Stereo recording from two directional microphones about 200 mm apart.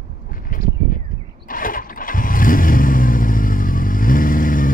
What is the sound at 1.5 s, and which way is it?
Vehicle, 45° left (ahead or behind).